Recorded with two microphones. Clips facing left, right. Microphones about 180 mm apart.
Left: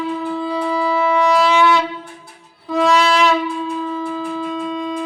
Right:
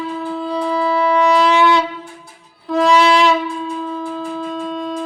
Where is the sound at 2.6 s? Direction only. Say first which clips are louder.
Right 1 dB; centre (ahead or behind).